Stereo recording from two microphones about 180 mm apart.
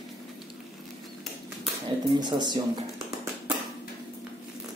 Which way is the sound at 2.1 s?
25° right (ahead or behind).